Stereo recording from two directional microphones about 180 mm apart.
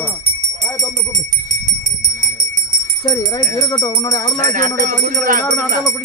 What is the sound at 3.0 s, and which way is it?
Speech, 20° left (ahead or behind).